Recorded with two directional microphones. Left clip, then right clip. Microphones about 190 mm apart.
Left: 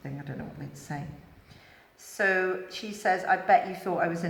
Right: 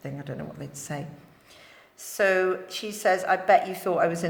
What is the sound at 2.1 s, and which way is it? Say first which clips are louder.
A woman's voice: right 3 dB; 55° right (ahead or behind).